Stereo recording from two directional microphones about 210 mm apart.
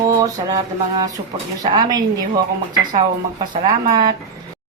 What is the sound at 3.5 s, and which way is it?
Speech, 20° right (ahead or behind).